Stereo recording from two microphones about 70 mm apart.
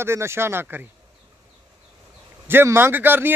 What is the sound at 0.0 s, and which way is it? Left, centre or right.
Speech, right.